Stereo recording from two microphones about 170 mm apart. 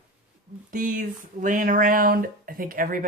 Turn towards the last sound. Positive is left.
turn(degrees=-55)  # may be behind; listen again after turning